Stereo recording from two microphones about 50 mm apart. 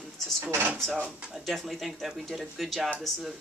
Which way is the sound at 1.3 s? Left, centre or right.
Centre.